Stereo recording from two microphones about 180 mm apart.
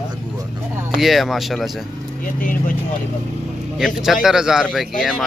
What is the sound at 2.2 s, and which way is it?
Speech, 50° left (ahead or behind).